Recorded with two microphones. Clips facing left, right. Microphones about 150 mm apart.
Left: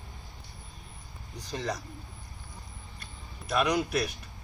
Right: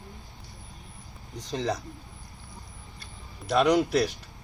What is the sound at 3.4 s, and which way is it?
Speech, 30° right (ahead or behind).